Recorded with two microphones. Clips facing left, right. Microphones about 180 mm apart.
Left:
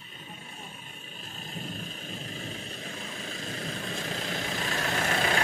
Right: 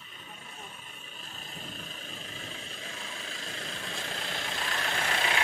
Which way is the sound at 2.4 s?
40° left (ahead or behind).